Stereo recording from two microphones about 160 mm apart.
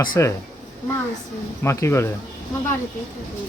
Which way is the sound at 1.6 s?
15° left (ahead or behind).